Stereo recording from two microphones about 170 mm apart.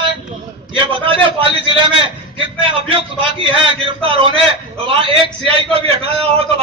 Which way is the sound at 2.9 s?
30° right (ahead or behind).